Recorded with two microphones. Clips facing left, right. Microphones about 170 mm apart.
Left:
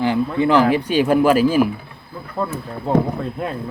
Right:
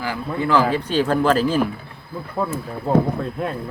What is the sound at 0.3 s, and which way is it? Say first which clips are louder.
Speech: left 2 dB; 20° left (ahead or behind).